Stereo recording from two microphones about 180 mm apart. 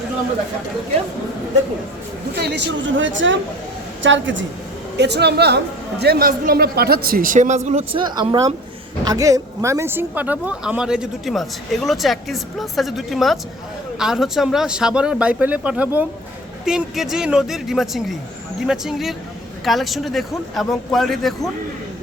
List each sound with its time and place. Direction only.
2.3 s a woman's voice: 65° right (ahead or behind); by 4.4 s 90° right
4.9 s a woman's voice: 70° right (ahead or behind); by 8.0 s 40° right (ahead or behind)
8.0 s a woman's voice: 25° right (ahead or behind); by 21.5 s centre (ahead or behind)